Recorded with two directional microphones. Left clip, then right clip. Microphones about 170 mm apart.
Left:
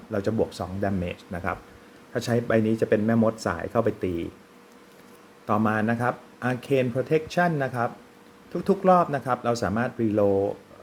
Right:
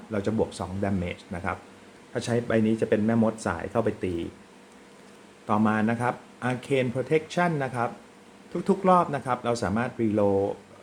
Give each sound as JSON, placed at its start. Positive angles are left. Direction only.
{"t": 0.1, "sound": "speech", "side_deg": 15}
{"t": 5.5, "sound": "speech", "side_deg": 20}